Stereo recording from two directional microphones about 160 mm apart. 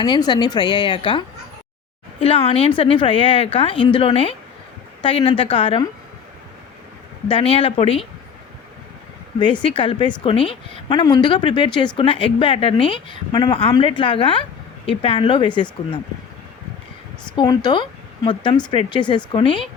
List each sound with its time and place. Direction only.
0.0 s speech: 25° left (ahead or behind)
2.2 s a woman's voice: 35° left (ahead or behind)
7.3 s a woman's voice: 35° left (ahead or behind)
9.4 s a woman's voice: 30° left (ahead or behind)
17.3 s a woman's voice: 25° left (ahead or behind)